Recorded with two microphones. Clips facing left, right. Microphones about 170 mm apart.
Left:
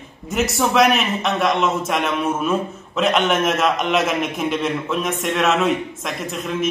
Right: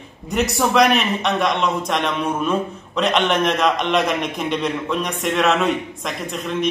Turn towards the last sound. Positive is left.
turn(degrees=0)  # may be behind; listen again after turning